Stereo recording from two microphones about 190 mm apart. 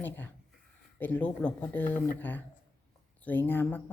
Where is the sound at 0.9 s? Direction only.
10° left (ahead or behind).